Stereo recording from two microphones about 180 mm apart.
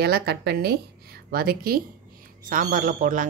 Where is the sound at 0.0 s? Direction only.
65° right (ahead or behind).